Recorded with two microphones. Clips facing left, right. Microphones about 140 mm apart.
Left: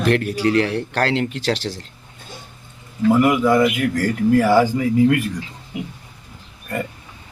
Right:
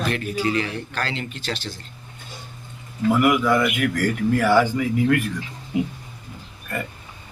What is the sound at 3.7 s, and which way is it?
Speech, 35° left (ahead or behind).